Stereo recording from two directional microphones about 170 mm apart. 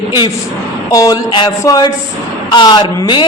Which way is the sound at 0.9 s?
20° left (ahead or behind).